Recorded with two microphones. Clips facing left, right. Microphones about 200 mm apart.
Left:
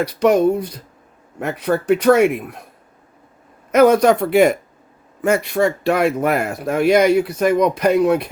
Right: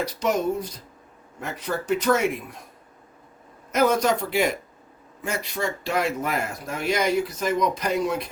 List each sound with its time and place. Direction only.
0.0 s speech: 65° left (ahead or behind)
3.7 s speech: 65° left (ahead or behind)